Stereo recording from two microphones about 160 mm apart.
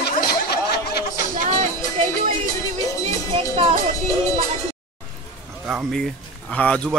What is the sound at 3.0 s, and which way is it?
Music, 35° right (ahead or behind).